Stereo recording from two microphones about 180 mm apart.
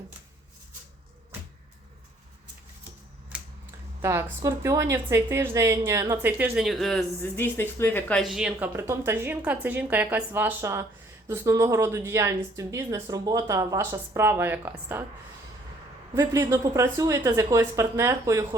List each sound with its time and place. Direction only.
4.0 s speech: 15° right (ahead or behind); by 7.0 s centre (ahead or behind)
7.2 s speech: 10° left (ahead or behind); by 15.0 s 10° right (ahead or behind)
16.1 s speech: 15° right (ahead or behind)